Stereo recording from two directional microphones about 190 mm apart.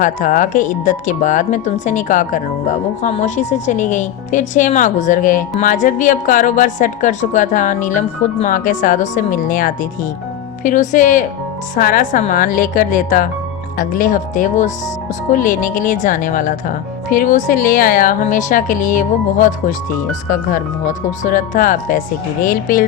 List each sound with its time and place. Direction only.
0.0 s speech: 45° left (ahead or behind)
21.2 s speech: 45° left (ahead or behind)